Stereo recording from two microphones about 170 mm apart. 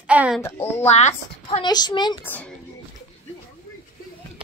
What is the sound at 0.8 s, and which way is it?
Speech, 40° left (ahead or behind).